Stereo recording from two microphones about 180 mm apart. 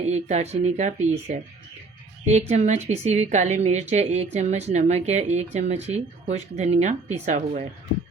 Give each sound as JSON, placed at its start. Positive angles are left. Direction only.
{"t": 0.0, "sound": "a woman's voice", "side_deg": -40}